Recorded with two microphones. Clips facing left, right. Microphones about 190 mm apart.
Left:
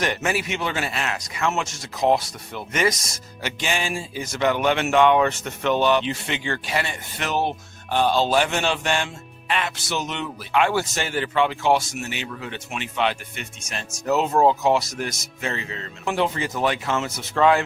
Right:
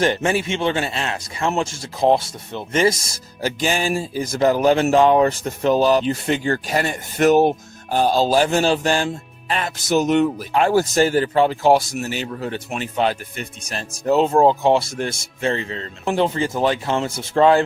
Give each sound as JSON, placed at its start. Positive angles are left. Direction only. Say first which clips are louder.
{"t": 0.0, "sound": "speech", "louder": "right 5 dB", "side_deg": -30}